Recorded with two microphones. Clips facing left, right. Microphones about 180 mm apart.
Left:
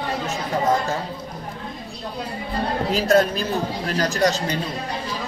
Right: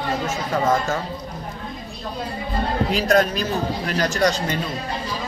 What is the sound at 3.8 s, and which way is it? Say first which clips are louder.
Speech: even; 40° left (ahead or behind).